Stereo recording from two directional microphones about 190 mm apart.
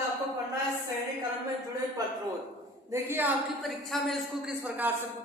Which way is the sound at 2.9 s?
10° right (ahead or behind).